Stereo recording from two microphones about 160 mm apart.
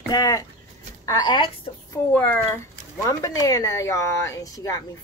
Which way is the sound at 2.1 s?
10° left (ahead or behind).